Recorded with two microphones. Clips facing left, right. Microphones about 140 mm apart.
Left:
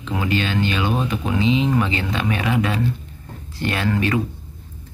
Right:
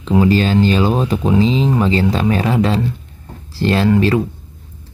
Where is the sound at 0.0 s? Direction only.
30° right (ahead or behind).